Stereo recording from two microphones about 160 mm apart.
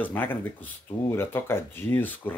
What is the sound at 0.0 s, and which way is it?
Speech, 10° left (ahead or behind).